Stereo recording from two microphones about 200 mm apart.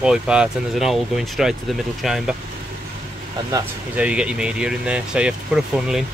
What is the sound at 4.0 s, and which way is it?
Speech, 5° right (ahead or behind).